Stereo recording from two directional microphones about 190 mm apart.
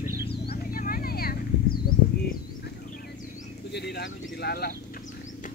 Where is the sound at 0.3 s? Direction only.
55° left (ahead or behind).